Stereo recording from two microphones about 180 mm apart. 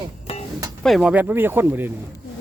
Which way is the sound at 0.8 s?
Centre (ahead or behind).